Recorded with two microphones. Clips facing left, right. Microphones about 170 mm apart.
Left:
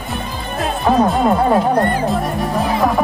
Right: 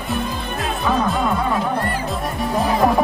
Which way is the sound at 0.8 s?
40° left (ahead or behind).